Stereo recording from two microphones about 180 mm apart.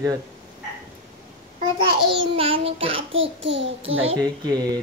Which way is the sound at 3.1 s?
90° right.